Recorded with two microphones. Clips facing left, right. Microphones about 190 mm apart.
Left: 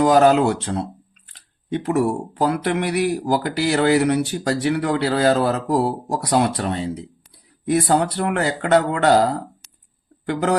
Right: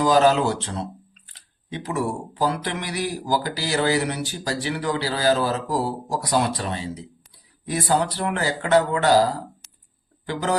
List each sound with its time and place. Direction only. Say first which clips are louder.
0.0 s speech: left 4 dB; 60° left (ahead or behind)